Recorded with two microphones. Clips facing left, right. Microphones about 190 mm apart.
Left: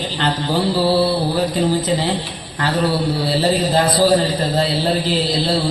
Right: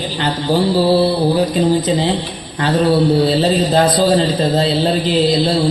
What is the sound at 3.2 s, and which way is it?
A man's voice, 20° right (ahead or behind).